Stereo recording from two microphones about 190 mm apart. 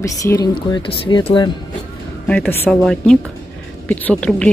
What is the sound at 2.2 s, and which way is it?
A woman's voice, 5° left (ahead or behind).